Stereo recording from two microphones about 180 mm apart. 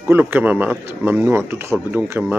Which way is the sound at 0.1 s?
10° right (ahead or behind).